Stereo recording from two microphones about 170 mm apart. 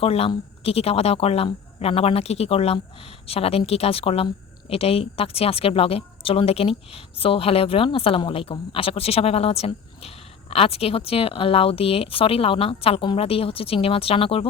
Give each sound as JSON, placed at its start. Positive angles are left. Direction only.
{"t": 0.0, "sound": "speech", "side_deg": 35}